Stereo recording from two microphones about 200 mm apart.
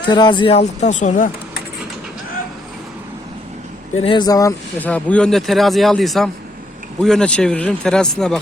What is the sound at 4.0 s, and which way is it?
Speech, 25° left (ahead or behind).